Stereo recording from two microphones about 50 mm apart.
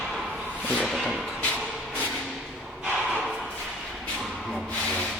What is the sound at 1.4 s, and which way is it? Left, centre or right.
Music, left.